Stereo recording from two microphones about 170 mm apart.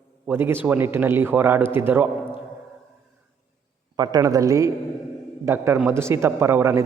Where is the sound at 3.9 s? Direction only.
25° right (ahead or behind).